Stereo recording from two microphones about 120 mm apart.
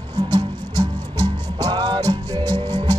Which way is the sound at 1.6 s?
35° right (ahead or behind).